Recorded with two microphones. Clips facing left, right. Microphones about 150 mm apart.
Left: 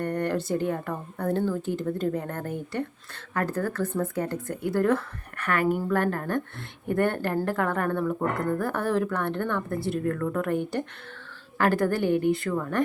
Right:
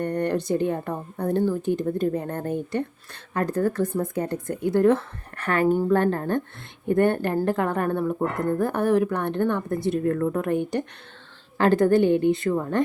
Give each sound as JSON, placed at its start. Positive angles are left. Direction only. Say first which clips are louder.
{"t": 0.0, "sound": "speech", "louder": "right 3 dB", "side_deg": -15}